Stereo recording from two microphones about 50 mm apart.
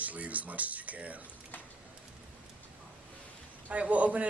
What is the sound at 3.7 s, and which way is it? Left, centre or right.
Speech, right.